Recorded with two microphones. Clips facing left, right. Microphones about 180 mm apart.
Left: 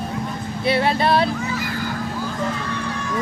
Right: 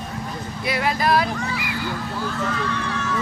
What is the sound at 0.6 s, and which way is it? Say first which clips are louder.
Music: left 4 dB; 30° left (ahead or behind).